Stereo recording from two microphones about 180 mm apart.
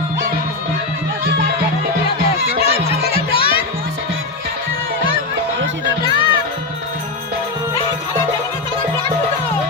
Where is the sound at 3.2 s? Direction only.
30° left (ahead or behind).